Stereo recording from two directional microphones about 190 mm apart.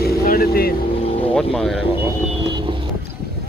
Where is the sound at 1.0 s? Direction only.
30° left (ahead or behind).